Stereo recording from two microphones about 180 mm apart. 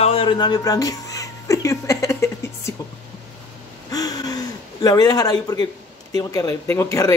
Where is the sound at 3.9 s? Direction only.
20° left (ahead or behind).